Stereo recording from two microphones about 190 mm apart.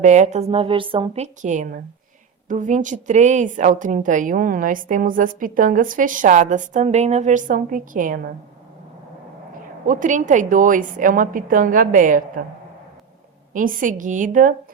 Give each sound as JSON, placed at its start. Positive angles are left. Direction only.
{"t": 0.0, "sound": "a woman's voice", "side_deg": -40}
{"t": 9.8, "sound": "a woman's voice", "side_deg": -45}
{"t": 13.5, "sound": "a woman's voice", "side_deg": -45}